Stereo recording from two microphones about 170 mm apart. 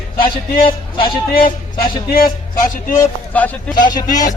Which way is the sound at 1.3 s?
55° left (ahead or behind).